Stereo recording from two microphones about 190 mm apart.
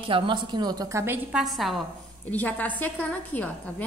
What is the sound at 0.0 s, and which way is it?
A woman's voice, 25° right (ahead or behind).